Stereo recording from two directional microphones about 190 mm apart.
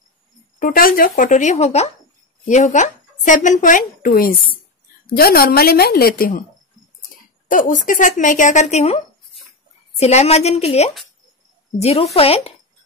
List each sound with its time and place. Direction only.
0.6 s a woman's voice: 50° left (ahead or behind)
7.4 s a woman's voice: 45° left (ahead or behind); by 12.5 s 30° left (ahead or behind)